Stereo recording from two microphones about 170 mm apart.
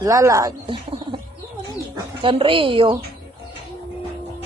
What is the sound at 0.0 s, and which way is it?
Speech, 20° right (ahead or behind).